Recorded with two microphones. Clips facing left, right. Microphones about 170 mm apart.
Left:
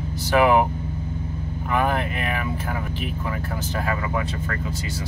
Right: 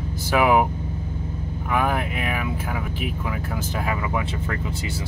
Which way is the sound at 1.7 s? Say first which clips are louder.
Left 1 dB; 10° right (ahead or behind).